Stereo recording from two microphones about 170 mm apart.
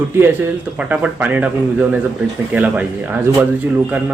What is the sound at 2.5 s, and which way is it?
Speech, 10° right (ahead or behind).